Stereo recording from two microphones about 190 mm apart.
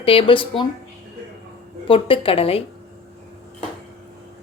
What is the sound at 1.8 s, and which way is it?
Speech, 30° left (ahead or behind).